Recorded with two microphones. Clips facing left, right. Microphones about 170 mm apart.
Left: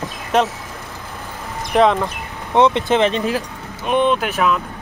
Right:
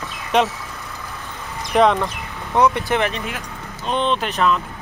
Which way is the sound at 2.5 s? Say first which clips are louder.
Left 3 dB; 20° left (ahead or behind).